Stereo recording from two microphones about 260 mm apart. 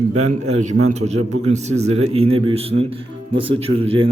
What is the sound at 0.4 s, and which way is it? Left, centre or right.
Speech, right.